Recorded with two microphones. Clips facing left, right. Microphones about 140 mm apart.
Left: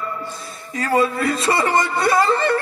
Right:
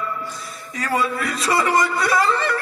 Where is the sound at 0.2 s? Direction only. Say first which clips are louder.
Left 1 dB; 30° left (ahead or behind).